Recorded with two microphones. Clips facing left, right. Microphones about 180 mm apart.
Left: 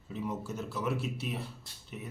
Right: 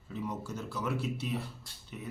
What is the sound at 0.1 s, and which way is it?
A man's voice, 5° left (ahead or behind).